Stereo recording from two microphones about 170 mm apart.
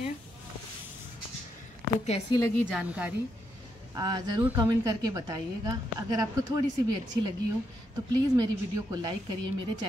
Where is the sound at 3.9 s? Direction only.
25° right (ahead or behind).